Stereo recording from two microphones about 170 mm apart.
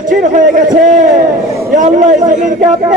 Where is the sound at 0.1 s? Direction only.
50° right (ahead or behind).